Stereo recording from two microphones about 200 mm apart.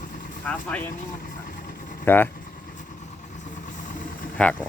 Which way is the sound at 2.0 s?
10° left (ahead or behind).